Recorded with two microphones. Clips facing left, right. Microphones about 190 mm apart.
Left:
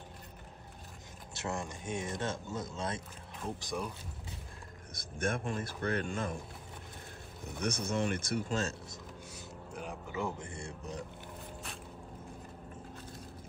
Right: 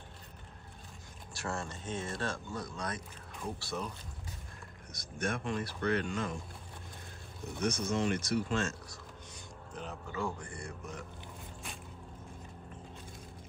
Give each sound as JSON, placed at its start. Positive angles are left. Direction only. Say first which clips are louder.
{"t": 1.3, "sound": "speech", "louder": "left 1 dB", "side_deg": 20}
{"t": 4.9, "sound": "a man's voice", "louder": "left 1 dB", "side_deg": 50}
{"t": 7.6, "sound": "a man's voice", "louder": "right 1 dB", "side_deg": 55}
{"t": 9.3, "sound": "speech", "louder": "left 1 dB", "side_deg": 10}